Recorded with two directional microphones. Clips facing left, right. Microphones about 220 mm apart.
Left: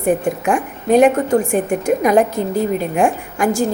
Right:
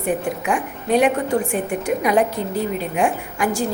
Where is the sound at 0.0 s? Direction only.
45° left (ahead or behind).